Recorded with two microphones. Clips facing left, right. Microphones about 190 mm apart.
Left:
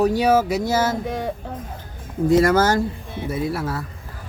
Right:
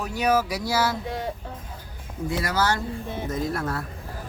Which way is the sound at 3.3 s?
10° left (ahead or behind).